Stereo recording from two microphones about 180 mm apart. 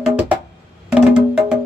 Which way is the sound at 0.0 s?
5° right (ahead or behind).